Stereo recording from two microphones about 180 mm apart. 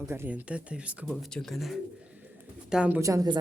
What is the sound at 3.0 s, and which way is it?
Speech, 20° right (ahead or behind).